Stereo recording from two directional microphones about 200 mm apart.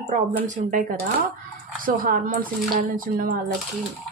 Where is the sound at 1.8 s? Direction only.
45° right (ahead or behind).